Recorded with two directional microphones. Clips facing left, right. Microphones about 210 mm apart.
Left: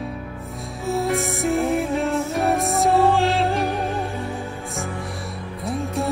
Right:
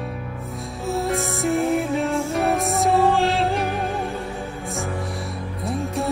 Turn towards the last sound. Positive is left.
turn(degrees=0)  # may be behind; listen again after turning